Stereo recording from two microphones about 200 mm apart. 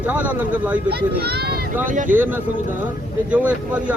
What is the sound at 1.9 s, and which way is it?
Speech, 40° right (ahead or behind).